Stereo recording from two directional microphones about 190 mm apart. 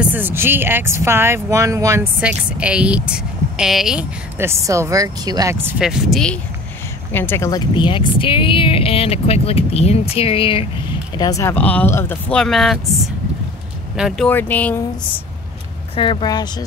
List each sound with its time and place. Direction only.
0.0 s speech: 10° right (ahead or behind); by 14.8 s 10° left (ahead or behind)
16.0 s speech: 25° left (ahead or behind)